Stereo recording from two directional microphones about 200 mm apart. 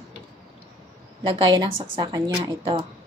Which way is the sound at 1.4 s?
20° right (ahead or behind).